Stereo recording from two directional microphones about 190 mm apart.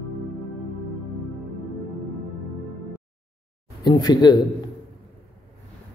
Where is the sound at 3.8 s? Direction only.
20° left (ahead or behind).